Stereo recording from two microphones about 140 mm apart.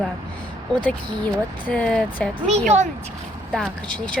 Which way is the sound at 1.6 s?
10° left (ahead or behind).